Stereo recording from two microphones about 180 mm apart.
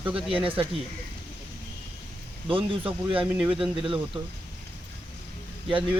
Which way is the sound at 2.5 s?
30° right (ahead or behind).